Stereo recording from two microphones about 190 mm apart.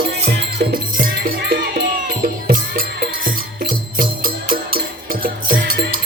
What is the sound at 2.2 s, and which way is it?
Music, 50° right (ahead or behind).